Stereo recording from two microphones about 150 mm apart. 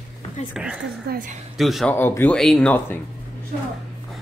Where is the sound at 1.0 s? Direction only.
75° right (ahead or behind).